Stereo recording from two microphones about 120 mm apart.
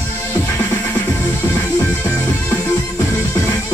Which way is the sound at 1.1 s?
20° left (ahead or behind).